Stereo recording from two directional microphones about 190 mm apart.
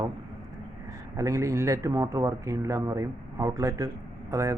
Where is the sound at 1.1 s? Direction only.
15° right (ahead or behind).